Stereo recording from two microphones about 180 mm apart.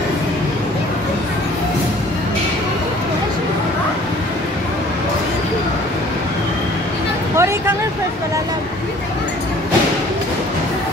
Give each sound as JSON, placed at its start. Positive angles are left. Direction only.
{"t": 7.3, "sound": "vehicle", "side_deg": -15}